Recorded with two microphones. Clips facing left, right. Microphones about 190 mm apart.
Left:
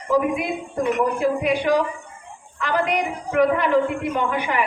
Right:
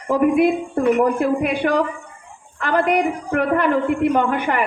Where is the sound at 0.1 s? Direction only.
55° right (ahead or behind).